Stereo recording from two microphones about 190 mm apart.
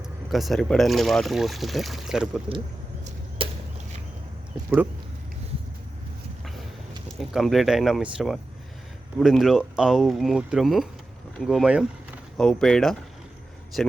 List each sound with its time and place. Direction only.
0.3 s speech: centre (ahead or behind)
3.0 s arrow: 30° right (ahead or behind)
7.3 s speech: centre (ahead or behind)